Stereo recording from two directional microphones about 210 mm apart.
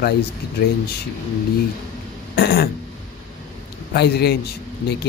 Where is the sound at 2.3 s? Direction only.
50° left (ahead or behind).